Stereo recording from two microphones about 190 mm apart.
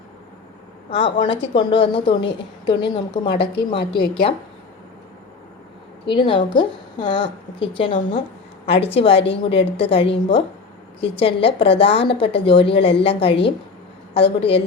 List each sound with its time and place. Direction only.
0.9 s a woman's voice: 30° left (ahead or behind)
6.1 s a woman's voice: 25° left (ahead or behind)